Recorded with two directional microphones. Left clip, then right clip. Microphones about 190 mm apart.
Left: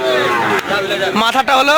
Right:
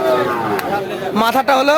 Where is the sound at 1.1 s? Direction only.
Centre (ahead or behind).